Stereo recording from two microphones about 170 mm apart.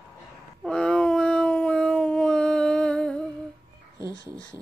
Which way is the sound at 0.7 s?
5° left (ahead or behind).